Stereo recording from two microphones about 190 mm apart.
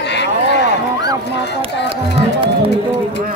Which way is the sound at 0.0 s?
65° left (ahead or behind).